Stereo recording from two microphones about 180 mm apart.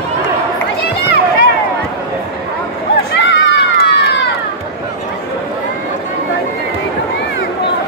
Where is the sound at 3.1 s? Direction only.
75° left (ahead or behind).